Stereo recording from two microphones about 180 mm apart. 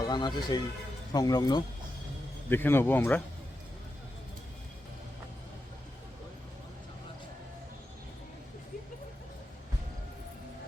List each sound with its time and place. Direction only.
0.0 s speech: 25° left (ahead or behind)
2.5 s a man's voice: 10° left (ahead or behind)